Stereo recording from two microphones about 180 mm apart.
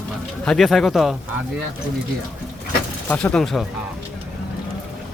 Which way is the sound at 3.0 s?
5° left (ahead or behind).